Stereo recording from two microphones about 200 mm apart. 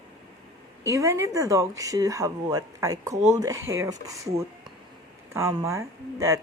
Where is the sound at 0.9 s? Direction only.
15° right (ahead or behind).